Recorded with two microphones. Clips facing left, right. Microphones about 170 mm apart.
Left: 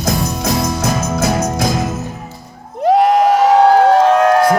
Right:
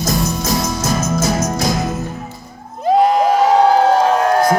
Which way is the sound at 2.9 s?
70° left (ahead or behind).